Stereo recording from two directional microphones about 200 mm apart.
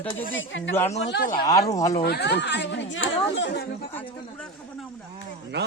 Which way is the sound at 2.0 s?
55° left (ahead or behind).